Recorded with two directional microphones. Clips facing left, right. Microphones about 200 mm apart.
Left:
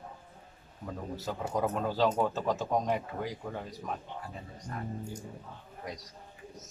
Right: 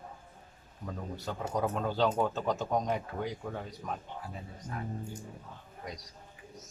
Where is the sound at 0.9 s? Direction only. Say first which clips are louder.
Left 2 dB; centre (ahead or behind).